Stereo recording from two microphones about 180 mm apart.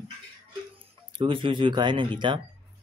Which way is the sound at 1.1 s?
30° right (ahead or behind).